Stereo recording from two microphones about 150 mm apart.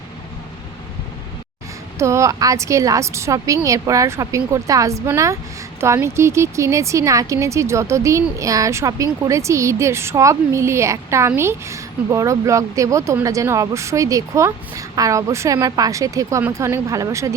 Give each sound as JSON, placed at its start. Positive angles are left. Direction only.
{"t": 2.0, "sound": "speech", "side_deg": -20}